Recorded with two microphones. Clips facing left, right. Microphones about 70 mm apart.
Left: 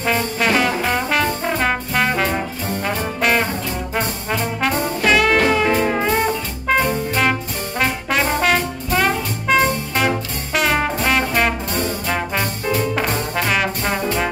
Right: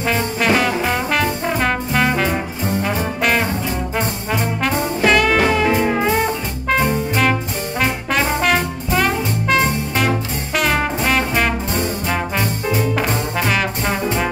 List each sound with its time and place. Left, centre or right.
0.0 s trombone: centre
3.2 s brass instrument: centre
5.0 s music: centre
8.2 s brass instrument: centre
9.9 s music: centre
12.8 s brass instrument: centre